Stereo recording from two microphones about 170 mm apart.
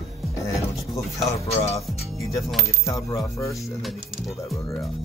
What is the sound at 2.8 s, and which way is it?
Coin, 20° left (ahead or behind).